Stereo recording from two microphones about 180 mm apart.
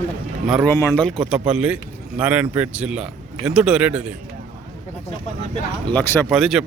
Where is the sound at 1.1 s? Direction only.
Centre (ahead or behind).